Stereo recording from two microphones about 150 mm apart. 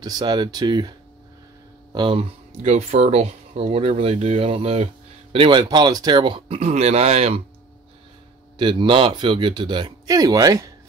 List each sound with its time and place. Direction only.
0.0 s speech: 25° right (ahead or behind)
1.9 s speech: 30° right (ahead or behind)
2.6 s speech: 50° right (ahead or behind)
8.5 s speech: 35° right (ahead or behind)